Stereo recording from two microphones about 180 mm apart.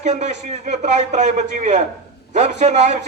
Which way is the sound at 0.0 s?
40° right (ahead or behind).